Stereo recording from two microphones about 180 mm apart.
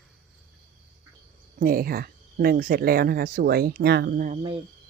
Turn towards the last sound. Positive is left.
turn(degrees=-55)  # may be behind; listen again after turning